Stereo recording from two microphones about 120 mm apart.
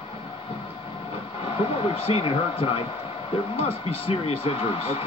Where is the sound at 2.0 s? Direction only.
55° left (ahead or behind).